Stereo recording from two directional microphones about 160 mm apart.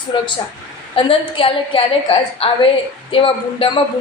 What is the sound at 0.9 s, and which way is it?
A woman's voice, 35° left (ahead or behind).